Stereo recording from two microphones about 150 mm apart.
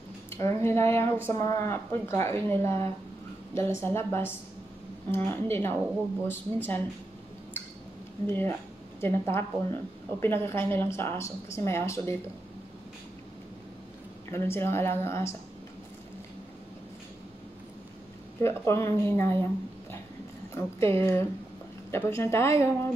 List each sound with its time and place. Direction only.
0.3 s speech: 15° left (ahead or behind)
8.3 s speech: 15° left (ahead or behind)
14.3 s speech: 15° left (ahead or behind)
18.4 s speech: 15° left (ahead or behind)
20.5 s speech: 20° left (ahead or behind)